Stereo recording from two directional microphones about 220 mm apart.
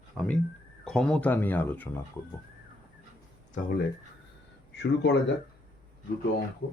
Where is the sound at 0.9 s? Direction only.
5° left (ahead or behind).